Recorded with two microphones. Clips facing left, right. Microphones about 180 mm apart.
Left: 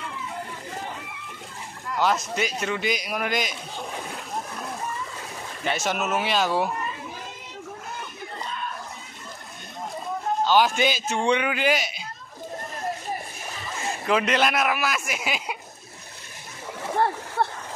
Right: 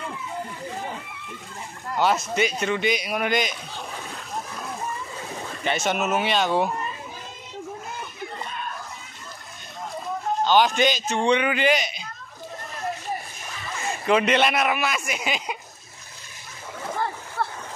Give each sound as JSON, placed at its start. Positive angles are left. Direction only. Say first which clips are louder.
{"t": 2.0, "sound": "speech", "louder": "right 2 dB", "side_deg": 0}
{"t": 5.6, "sound": "speech", "louder": "right 2 dB", "side_deg": 0}
{"t": 10.4, "sound": "a man's voice", "louder": "right 1 dB", "side_deg": 5}
{"t": 14.0, "sound": "speech", "louder": "right 2 dB", "side_deg": 0}
{"t": 17.0, "sound": "a sound", "louder": "left 6 dB", "side_deg": 65}